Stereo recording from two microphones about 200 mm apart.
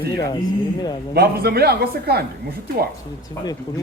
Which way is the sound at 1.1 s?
50° right (ahead or behind).